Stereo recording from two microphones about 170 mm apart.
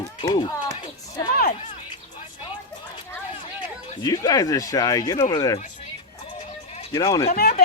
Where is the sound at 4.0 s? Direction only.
20° left (ahead or behind).